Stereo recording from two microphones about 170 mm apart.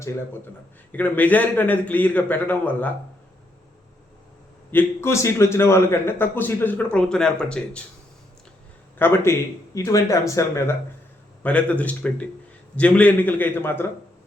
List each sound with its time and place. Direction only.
0.9 s a man's voice: 10° left (ahead or behind)
4.7 s a man's voice: 15° left (ahead or behind)
9.0 s a man's voice: 15° left (ahead or behind)